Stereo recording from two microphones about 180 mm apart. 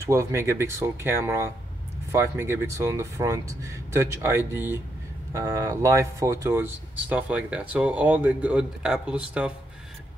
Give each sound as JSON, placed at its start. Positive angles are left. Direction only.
{"t": 0.0, "sound": "speech", "side_deg": -15}